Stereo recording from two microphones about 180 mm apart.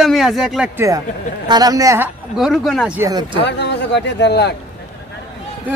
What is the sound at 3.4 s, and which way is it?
A man's voice, 70° left (ahead or behind).